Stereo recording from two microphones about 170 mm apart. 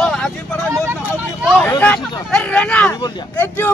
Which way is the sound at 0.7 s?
15° right (ahead or behind).